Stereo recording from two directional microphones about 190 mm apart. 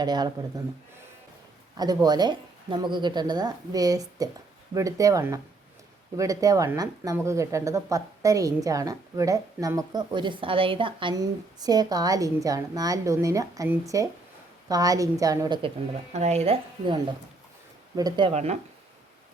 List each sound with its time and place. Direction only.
0.0 s speech: 20° right (ahead or behind)
1.7 s a woman's voice: 20° right (ahead or behind)
16.1 s a woman's voice: 35° right (ahead or behind)